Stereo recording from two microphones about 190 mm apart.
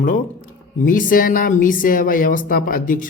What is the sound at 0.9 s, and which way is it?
Speech, 45° left (ahead or behind).